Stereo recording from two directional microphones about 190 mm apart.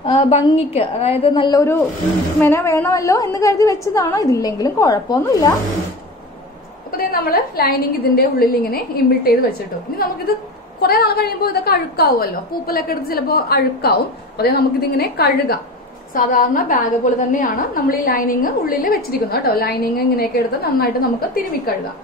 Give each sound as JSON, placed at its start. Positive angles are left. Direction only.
{"t": 0.0, "sound": "a woman's voice", "side_deg": 30}
{"t": 7.0, "sound": "a woman's voice", "side_deg": 50}
{"t": 10.8, "sound": "a woman's voice", "side_deg": 55}